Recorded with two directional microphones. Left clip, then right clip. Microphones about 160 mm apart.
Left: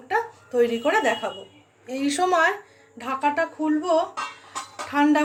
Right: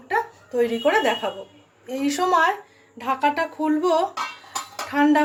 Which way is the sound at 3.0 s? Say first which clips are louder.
Right 2 dB; 5° right (ahead or behind).